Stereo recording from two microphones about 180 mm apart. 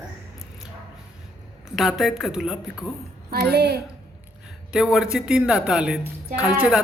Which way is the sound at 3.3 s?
65° right (ahead or behind).